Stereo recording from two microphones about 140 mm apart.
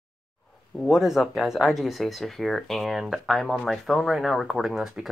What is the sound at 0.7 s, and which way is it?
Speech, centre (ahead or behind).